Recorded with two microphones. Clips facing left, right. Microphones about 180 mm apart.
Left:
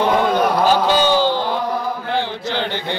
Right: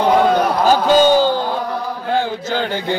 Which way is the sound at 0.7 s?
45° right (ahead or behind).